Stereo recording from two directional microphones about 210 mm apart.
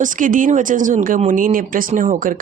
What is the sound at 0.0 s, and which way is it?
Speech, 40° right (ahead or behind).